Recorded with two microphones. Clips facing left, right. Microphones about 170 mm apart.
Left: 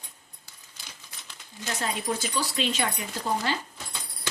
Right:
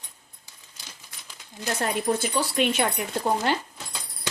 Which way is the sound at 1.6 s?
60° right (ahead or behind).